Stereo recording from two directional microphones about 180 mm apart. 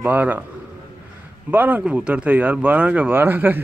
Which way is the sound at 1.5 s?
10° right (ahead or behind).